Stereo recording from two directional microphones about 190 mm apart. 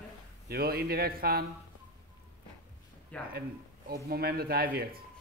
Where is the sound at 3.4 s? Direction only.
55° right (ahead or behind).